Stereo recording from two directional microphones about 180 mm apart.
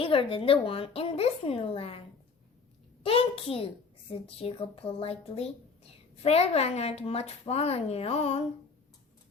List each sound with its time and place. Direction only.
0.0 s speech: 30° left (ahead or behind)